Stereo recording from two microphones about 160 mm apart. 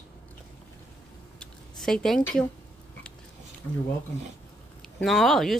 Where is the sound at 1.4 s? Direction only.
5° left (ahead or behind).